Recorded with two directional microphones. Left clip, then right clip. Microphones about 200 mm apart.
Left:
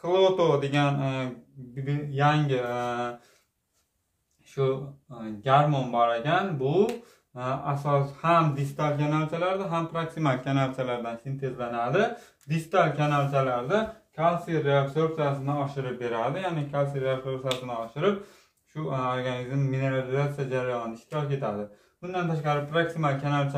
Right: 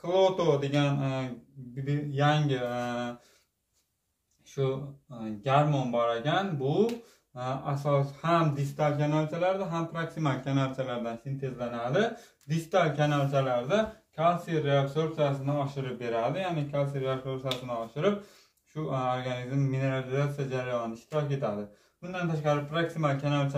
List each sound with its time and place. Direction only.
0.0 s speech: 15° left (ahead or behind)
4.6 s speech: 15° left (ahead or behind)